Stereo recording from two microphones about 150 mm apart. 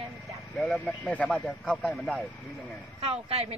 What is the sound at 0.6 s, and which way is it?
Speech, 10° left (ahead or behind).